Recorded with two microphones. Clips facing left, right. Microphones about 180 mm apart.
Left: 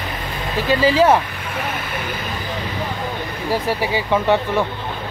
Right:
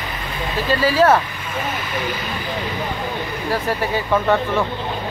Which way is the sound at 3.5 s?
15° left (ahead or behind).